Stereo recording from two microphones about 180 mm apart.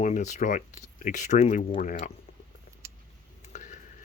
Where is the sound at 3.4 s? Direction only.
40° left (ahead or behind).